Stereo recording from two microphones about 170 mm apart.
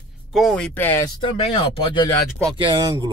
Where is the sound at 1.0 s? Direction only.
30° left (ahead or behind).